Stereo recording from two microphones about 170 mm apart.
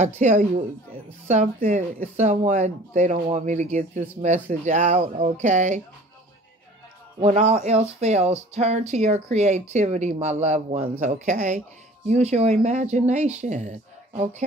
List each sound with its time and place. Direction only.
0.0 s speech: 45° right (ahead or behind)
7.2 s speech: 40° right (ahead or behind)